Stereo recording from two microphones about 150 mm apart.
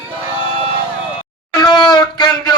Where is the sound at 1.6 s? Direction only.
30° left (ahead or behind).